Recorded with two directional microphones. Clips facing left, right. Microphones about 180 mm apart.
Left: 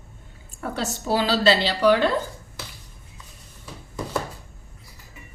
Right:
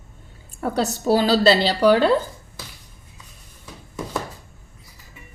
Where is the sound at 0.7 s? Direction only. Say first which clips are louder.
Right 5 dB; 40° right (ahead or behind).